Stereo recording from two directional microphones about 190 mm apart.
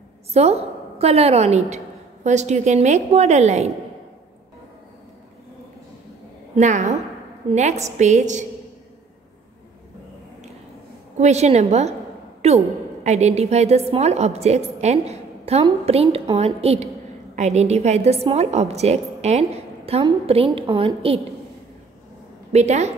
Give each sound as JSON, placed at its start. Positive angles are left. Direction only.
{"t": 0.3, "sound": "a woman's voice", "side_deg": -35}
{"t": 6.5, "sound": "a woman's voice", "side_deg": -40}
{"t": 11.1, "sound": "a woman's voice", "side_deg": -35}
{"t": 22.5, "sound": "a woman's voice", "side_deg": -35}